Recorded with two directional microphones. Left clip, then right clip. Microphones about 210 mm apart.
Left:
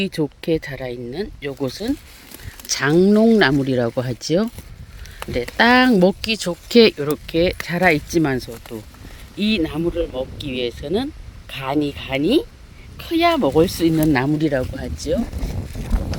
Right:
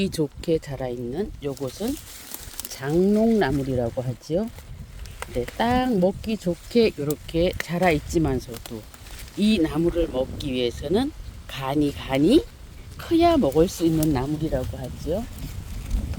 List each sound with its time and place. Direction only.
0.0 s speech: centre (ahead or behind); by 2.0 s 25° left (ahead or behind)
2.6 s speech: 40° left (ahead or behind)
7.3 s speech: 15° left (ahead or behind)
9.4 s speech: 5° left (ahead or behind)
14.1 s speech: 30° left (ahead or behind)
14.5 s speech: 50° left (ahead or behind)